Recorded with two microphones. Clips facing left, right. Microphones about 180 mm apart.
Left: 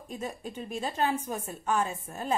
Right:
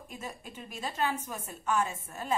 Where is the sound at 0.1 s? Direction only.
35° left (ahead or behind).